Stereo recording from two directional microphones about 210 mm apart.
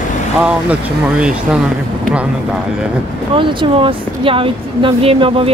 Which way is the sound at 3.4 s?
25° right (ahead or behind).